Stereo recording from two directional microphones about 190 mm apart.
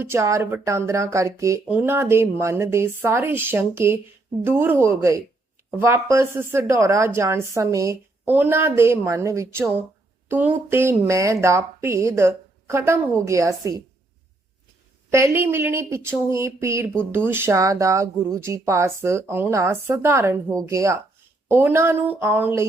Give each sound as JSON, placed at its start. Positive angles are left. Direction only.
{"t": 0.0, "sound": "speech", "side_deg": -15}
{"t": 15.1, "sound": "speech", "side_deg": -15}